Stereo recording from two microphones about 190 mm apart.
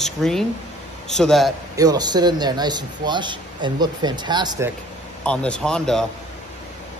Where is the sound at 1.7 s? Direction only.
20° right (ahead or behind).